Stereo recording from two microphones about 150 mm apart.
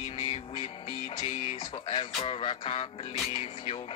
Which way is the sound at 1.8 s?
40° left (ahead or behind).